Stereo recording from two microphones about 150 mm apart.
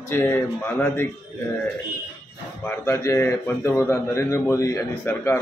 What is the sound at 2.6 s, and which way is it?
A man's voice, 15° left (ahead or behind).